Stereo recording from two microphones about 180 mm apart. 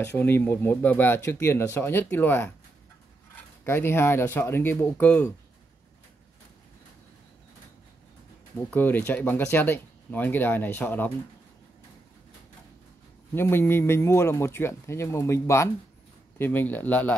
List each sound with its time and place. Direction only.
0.0 s speech: 10° left (ahead or behind)
3.6 s speech: 15° left (ahead or behind)
8.6 s speech: 10° left (ahead or behind)
13.3 s speech: 10° left (ahead or behind)